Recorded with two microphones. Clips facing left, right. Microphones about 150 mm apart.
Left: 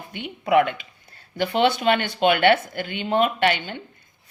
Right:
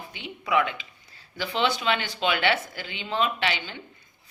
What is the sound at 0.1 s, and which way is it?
Speech, 55° left (ahead or behind).